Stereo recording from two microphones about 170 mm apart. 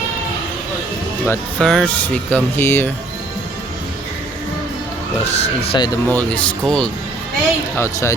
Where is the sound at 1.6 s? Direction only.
5° left (ahead or behind).